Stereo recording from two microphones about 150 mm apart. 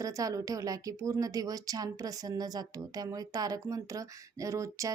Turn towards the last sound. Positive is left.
turn(degrees=-20)  # may be behind; listen again after turning